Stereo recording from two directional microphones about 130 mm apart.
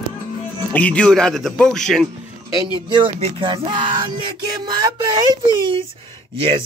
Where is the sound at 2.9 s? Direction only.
40° right (ahead or behind).